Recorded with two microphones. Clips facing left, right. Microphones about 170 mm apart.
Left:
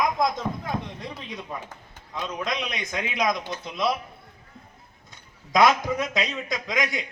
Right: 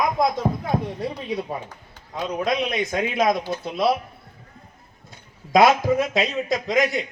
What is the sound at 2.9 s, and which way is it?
Speech, 50° right (ahead or behind).